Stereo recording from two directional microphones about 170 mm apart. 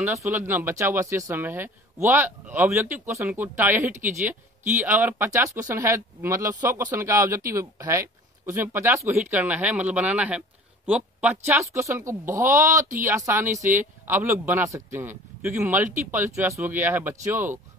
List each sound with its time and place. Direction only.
0.0 s speech: 15° right (ahead or behind)